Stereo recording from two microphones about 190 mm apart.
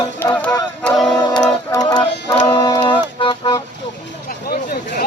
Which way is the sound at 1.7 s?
20° left (ahead or behind).